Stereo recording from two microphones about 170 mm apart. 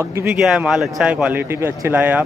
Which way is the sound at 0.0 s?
15° right (ahead or behind).